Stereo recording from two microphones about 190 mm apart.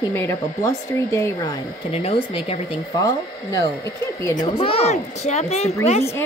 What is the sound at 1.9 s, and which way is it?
Speech, 30° left (ahead or behind).